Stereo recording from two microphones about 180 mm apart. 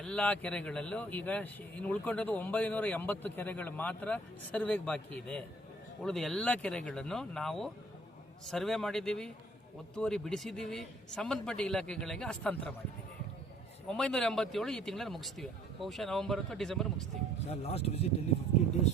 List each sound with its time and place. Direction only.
0.0 s speech: 5° left (ahead or behind)
6.0 s speech: centre (ahead or behind)
13.8 s speech: 5° left (ahead or behind)
17.5 s speech: 35° left (ahead or behind)